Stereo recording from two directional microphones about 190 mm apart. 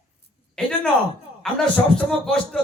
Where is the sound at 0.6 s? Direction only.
5° left (ahead or behind).